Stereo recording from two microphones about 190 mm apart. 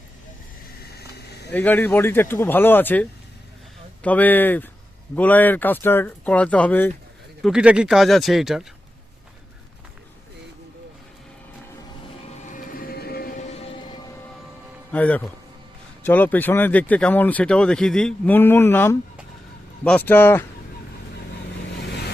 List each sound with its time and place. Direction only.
0.9 s vehicle: 60° left (ahead or behind)
1.5 s speech: 10° left (ahead or behind)
7.4 s speech: 5° right (ahead or behind)
12.5 s a sound: 45° left (ahead or behind)
13.5 s music: 35° left (ahead or behind)
14.9 s speech: 10° left (ahead or behind)